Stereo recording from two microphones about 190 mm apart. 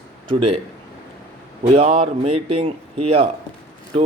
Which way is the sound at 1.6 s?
35° right (ahead or behind).